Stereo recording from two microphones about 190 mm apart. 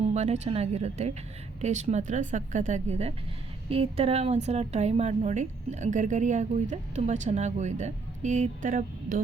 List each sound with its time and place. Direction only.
0.0 s a woman's voice: 35° right (ahead or behind)